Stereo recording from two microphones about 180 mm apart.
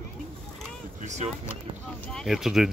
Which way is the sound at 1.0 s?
40° right (ahead or behind).